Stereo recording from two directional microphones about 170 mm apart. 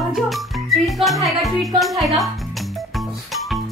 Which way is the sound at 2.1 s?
Centre (ahead or behind).